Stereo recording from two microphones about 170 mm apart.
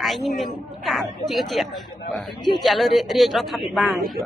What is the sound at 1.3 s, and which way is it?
Speech, centre (ahead or behind).